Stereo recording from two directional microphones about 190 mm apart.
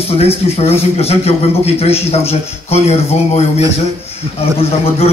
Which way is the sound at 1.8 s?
30° left (ahead or behind).